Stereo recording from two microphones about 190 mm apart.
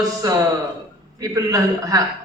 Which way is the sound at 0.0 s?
20° right (ahead or behind).